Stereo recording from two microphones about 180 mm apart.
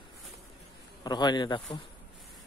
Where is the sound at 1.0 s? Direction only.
25° left (ahead or behind).